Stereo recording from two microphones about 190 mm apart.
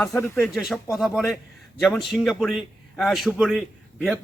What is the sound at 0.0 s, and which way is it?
Speech, 15° left (ahead or behind).